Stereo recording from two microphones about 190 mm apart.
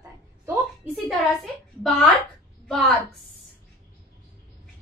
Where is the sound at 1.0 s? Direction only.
Centre (ahead or behind).